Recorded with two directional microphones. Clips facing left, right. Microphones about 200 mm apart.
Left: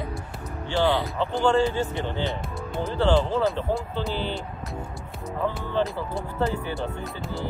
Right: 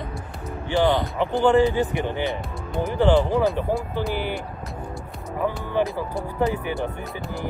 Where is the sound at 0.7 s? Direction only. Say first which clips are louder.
Right 3 dB; 15° right (ahead or behind).